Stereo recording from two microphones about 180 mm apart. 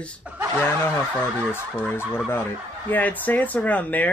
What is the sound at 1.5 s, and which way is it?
A man's voice, 10° left (ahead or behind).